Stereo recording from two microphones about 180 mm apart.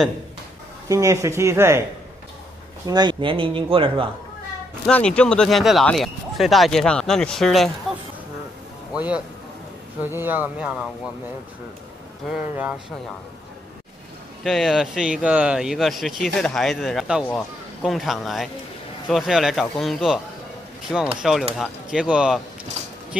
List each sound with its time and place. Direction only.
0.8 s speech: 15° right (ahead or behind)
2.9 s speech: 25° right (ahead or behind)
4.8 s speech: 5° left (ahead or behind)
8.9 s speech: 5° right (ahead or behind)
12.3 s speech: 5° right (ahead or behind)
14.4 s speech: centre (ahead or behind)
21.2 s speech: centre (ahead or behind)